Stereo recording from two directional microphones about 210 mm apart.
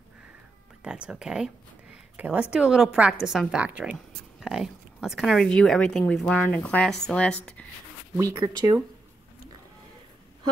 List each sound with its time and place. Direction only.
0.8 s a woman's voice: 5° right (ahead or behind)
8.2 s speech: 20° right (ahead or behind)